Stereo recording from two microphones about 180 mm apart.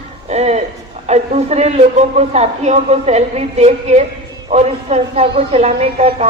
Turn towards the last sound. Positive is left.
turn(degrees=-35)  # may be behind; listen again after turning